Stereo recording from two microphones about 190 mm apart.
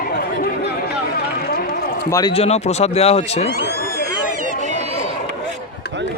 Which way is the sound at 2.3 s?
35° left (ahead or behind).